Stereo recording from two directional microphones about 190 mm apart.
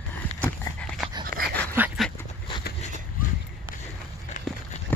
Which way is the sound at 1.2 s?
50° right (ahead or behind).